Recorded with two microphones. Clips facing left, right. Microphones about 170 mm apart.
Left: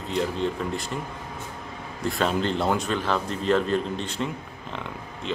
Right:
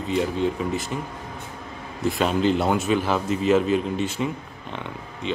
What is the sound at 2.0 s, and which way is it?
A man's voice, 5° right (ahead or behind).